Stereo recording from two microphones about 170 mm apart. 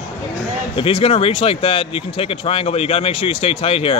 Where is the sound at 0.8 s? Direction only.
30° left (ahead or behind).